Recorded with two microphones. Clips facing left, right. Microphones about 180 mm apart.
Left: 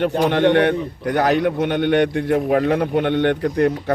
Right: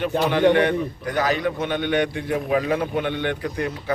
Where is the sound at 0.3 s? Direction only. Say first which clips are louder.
Left 1 dB; 65° left (ahead or behind).